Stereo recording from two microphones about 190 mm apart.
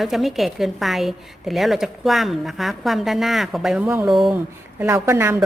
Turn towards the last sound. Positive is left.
turn(degrees=-15)  # may be behind; listen again after turning